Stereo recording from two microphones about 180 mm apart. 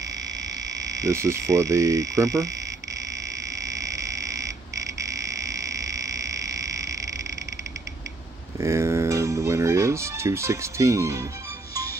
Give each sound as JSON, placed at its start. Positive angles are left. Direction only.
{"t": 0.7, "sound": "frog", "side_deg": -20}
{"t": 8.5, "sound": "music", "side_deg": -15}